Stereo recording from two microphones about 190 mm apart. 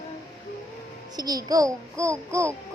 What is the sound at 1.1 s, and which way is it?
A child's voice, 20° right (ahead or behind).